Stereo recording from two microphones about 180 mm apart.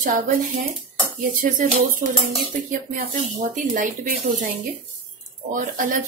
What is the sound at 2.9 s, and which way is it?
Dishes, 50° right (ahead or behind).